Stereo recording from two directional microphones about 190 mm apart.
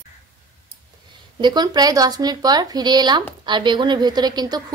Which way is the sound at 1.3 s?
20° right (ahead or behind).